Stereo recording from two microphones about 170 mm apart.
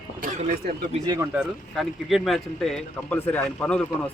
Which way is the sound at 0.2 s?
45° right (ahead or behind).